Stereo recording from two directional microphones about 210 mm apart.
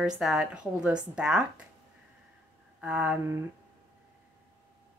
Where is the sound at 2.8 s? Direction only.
5° right (ahead or behind).